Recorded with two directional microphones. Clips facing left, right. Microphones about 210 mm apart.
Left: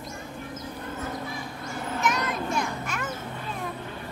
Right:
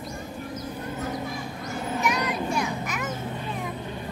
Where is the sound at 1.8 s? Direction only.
15° right (ahead or behind).